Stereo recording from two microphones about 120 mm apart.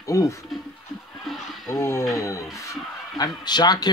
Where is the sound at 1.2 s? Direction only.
Centre (ahead or behind).